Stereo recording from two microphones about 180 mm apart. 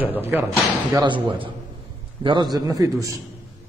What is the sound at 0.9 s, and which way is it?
A man's voice, 25° right (ahead or behind).